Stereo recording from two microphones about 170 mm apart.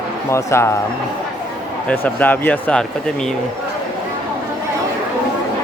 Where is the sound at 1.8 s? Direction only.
10° left (ahead or behind).